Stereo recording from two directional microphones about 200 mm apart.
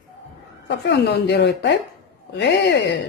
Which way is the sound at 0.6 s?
60° left (ahead or behind).